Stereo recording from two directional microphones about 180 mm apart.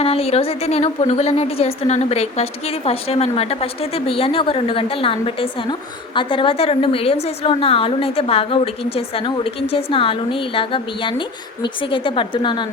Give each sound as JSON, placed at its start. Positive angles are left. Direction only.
{"t": 0.0, "sound": "a woman's voice", "side_deg": 35}